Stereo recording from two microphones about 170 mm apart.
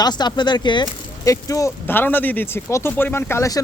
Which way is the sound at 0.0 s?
25° left (ahead or behind).